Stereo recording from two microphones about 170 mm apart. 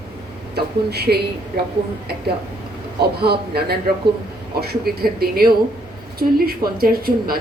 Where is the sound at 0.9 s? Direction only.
70° right (ahead or behind).